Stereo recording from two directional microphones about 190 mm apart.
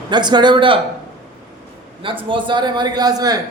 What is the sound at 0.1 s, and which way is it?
Speech, 25° right (ahead or behind).